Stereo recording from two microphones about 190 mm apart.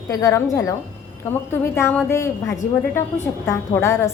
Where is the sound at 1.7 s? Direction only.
15° left (ahead or behind).